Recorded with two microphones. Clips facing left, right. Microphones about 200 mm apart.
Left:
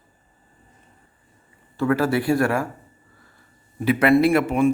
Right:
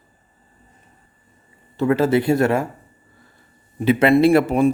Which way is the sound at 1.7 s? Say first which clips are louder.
Right 3 dB; 20° right (ahead or behind).